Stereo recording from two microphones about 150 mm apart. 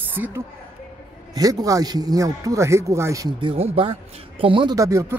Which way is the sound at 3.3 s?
40° right (ahead or behind).